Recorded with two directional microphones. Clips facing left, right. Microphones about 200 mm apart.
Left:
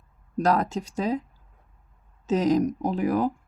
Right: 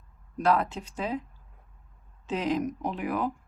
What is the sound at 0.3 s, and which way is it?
Speech, 40° left (ahead or behind).